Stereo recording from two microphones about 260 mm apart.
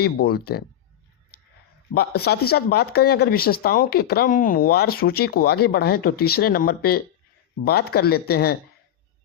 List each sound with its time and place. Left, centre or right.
0.0 s speech: left
1.3 s a sound: left
1.9 s speech: left